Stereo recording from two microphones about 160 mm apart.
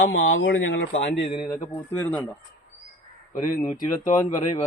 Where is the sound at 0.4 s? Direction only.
90° left.